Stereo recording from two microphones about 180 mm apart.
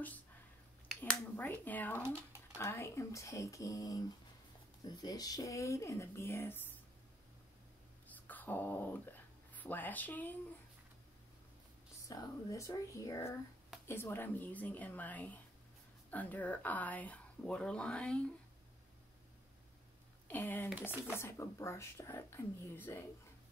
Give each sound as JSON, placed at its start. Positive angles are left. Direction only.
{"t": 1.0, "sound": "speech", "side_deg": 10}
{"t": 8.3, "sound": "a sound", "side_deg": 10}
{"t": 9.5, "sound": "speech", "side_deg": 10}
{"t": 12.1, "sound": "speech", "side_deg": 20}
{"t": 20.2, "sound": "speech", "side_deg": 10}